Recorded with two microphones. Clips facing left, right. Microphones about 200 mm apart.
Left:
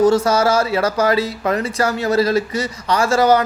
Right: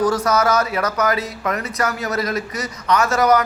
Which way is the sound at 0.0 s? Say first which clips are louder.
Left 4 dB; 25° left (ahead or behind).